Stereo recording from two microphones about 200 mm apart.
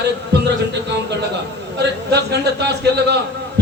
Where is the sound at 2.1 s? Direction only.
55° right (ahead or behind).